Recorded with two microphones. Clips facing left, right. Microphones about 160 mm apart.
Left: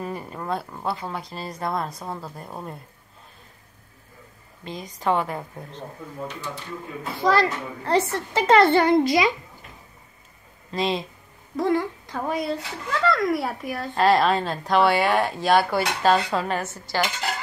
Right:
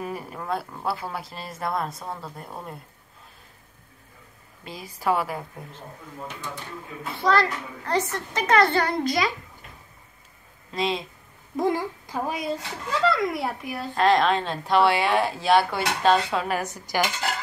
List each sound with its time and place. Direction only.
0.0 s a woman's voice: 5° right (ahead or behind)
4.6 s a woman's voice: 5° right (ahead or behind)
7.2 s a child's voice: 10° left (ahead or behind)
7.4 s a child's voice: 25° left (ahead or behind)
10.7 s a woman's voice: centre (ahead or behind)
11.5 s a woman's voice: 15° right (ahead or behind)
13.1 s a woman's voice: centre (ahead or behind)
16.6 s a woman's voice: 15° right (ahead or behind)